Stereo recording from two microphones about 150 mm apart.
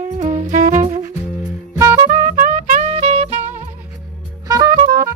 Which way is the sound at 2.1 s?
65° right (ahead or behind).